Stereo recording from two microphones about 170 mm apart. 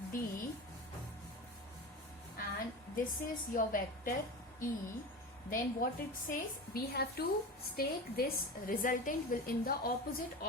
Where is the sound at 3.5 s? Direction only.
55° left (ahead or behind).